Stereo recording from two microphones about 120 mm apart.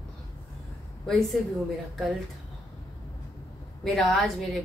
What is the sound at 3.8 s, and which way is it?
Speech, centre (ahead or behind).